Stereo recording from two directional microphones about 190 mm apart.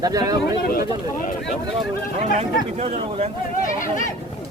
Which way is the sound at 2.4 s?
35° right (ahead or behind).